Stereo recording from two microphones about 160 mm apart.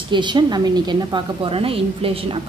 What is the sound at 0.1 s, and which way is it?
A woman's voice, 30° right (ahead or behind).